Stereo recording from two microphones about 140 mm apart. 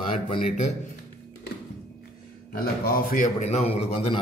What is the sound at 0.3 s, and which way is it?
Speech, 40° left (ahead or behind).